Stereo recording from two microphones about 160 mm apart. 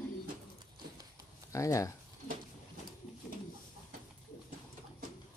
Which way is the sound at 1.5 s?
20° left (ahead or behind).